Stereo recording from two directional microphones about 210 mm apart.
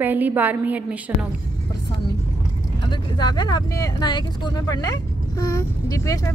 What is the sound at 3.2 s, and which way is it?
Speech, 20° left (ahead or behind).